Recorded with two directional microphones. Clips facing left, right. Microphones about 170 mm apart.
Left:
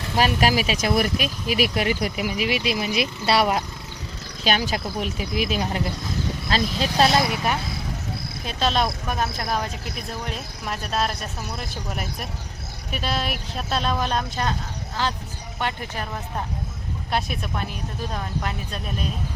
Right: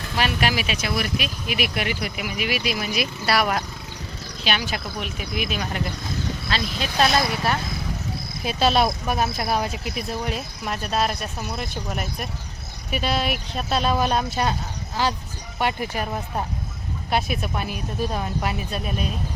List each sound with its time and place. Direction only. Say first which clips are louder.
0.2 s speech: left 3 dB; 40° left (ahead or behind)
4.4 s speech: left 3 dB; 40° left (ahead or behind); by 7.6 s 15° left (ahead or behind)
8.4 s speech: right 3 dB; 10° right (ahead or behind)